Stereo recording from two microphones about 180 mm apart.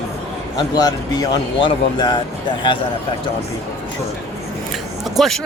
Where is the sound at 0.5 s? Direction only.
20° left (ahead or behind).